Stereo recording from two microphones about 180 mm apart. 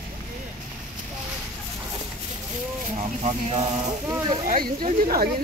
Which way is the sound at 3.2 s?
40° right (ahead or behind).